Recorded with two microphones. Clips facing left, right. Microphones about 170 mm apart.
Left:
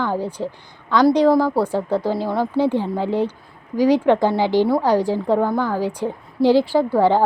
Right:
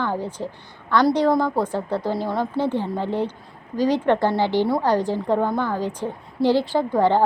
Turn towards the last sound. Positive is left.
turn(degrees=10)  # may be behind; listen again after turning